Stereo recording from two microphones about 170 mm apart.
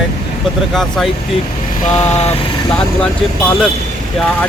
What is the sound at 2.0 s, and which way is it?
Vehicle, 40° left (ahead or behind).